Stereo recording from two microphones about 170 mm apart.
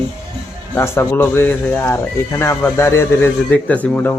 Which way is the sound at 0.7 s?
15° left (ahead or behind).